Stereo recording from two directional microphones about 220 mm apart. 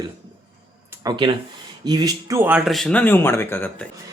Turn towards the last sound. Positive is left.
turn(degrees=10)  # may be behind; listen again after turning